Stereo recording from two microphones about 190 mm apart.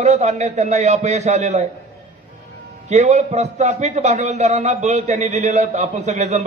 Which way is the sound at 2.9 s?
35° right (ahead or behind).